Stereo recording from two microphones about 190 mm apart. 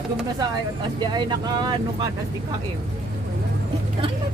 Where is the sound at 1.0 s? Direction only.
20° right (ahead or behind).